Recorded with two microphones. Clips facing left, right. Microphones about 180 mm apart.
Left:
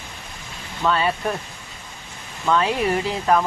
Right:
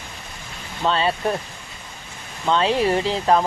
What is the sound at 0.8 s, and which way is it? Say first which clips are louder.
Speech: even; 30° right (ahead or behind).